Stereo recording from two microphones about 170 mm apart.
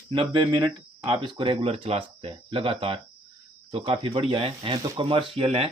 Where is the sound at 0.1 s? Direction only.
30° right (ahead or behind).